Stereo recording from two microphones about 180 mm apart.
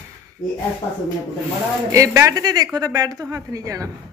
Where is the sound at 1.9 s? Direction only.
15° right (ahead or behind).